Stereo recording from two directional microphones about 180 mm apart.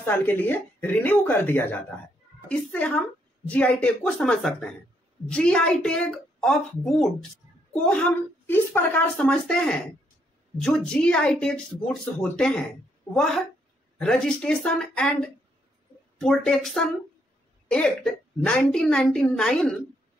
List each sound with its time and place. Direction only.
0.0 s a woman's voice: 10° left (ahead or behind)
13.9 s a woman's voice: 5° left (ahead or behind)